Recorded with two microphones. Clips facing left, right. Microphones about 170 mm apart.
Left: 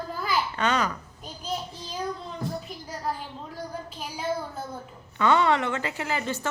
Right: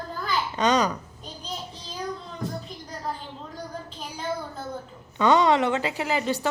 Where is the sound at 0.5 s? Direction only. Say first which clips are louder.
Right 7 dB; 15° right (ahead or behind).